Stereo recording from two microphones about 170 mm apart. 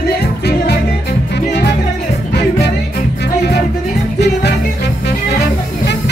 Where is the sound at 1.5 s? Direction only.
90° left.